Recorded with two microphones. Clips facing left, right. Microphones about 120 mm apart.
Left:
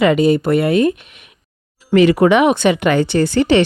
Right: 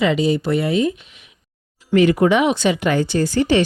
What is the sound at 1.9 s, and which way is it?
Speech, 85° left.